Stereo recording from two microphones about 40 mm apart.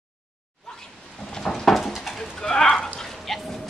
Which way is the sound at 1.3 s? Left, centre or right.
Centre.